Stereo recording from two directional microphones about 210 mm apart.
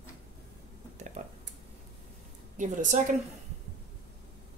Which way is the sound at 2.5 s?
35° right (ahead or behind).